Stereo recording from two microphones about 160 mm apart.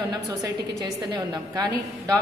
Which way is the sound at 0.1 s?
25° right (ahead or behind).